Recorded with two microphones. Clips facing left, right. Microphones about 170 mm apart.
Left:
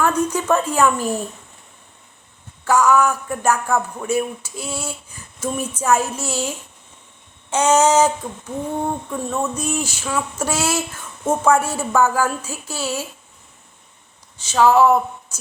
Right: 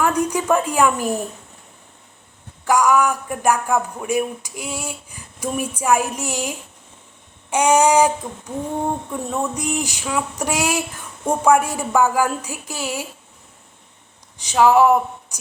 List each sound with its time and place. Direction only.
0.0 s a woman's voice: 15° right (ahead or behind)
2.6 s speech: 15° right (ahead or behind)
14.3 s speech: 15° right (ahead or behind)